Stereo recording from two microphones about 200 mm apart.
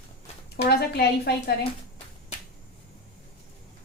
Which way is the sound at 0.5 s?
55° left (ahead or behind).